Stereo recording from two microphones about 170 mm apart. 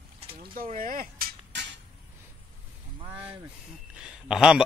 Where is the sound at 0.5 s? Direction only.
55° right (ahead or behind).